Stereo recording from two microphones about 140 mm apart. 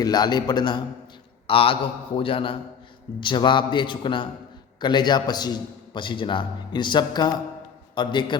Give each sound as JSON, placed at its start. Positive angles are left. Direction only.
{"t": 0.0, "sound": "a man's voice", "side_deg": 30}